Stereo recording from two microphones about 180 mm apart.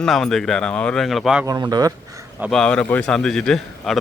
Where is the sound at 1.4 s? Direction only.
20° right (ahead or behind).